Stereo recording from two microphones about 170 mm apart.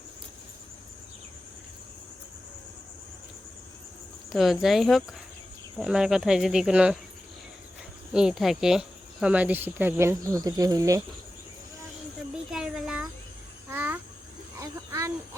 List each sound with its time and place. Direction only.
4.3 s speech: centre (ahead or behind)
8.1 s speech: 5° right (ahead or behind); by 11.0 s 20° right (ahead or behind)
12.3 s a sound: 5° right (ahead or behind)
13.7 s babbling: 10° right (ahead or behind)
14.6 s snake: 15° right (ahead or behind)